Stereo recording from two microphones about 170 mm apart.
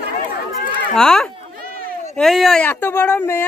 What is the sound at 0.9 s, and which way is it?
Speech, 5° left (ahead or behind).